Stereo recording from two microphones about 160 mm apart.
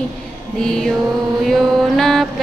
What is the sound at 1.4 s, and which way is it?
Music, centre (ahead or behind).